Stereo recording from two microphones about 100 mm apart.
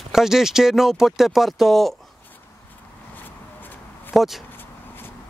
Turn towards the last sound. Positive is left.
turn(degrees=0)  # may be behind; listen again after turning